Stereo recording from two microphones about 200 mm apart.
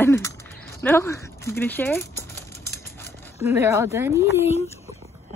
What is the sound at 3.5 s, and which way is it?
Speech, 15° right (ahead or behind).